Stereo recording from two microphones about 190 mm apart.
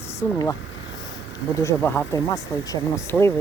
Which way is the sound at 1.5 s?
10° left (ahead or behind).